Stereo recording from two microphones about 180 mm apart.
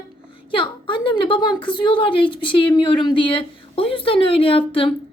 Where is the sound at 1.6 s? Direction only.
25° left (ahead or behind).